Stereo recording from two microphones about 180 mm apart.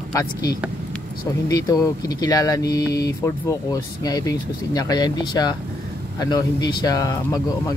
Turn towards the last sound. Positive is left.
turn(degrees=20)  # may be behind; listen again after turning